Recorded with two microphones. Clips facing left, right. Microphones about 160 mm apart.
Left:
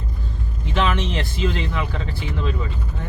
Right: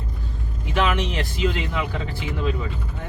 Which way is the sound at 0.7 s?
10° right (ahead or behind).